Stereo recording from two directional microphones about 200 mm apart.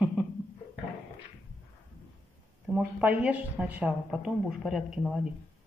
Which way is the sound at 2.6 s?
5° right (ahead or behind).